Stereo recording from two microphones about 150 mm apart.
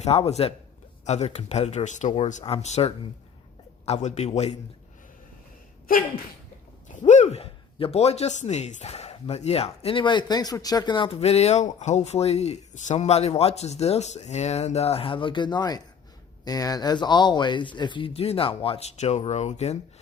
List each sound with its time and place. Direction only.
0.0 s speech: 45° left (ahead or behind)
6.8 s speech: 55° left (ahead or behind)